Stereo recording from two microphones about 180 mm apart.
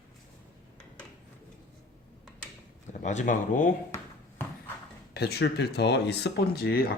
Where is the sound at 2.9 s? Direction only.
40° left (ahead or behind).